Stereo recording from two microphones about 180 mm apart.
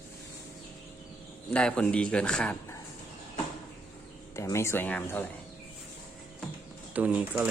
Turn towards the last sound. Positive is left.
turn(degrees=-5)  # may be behind; listen again after turning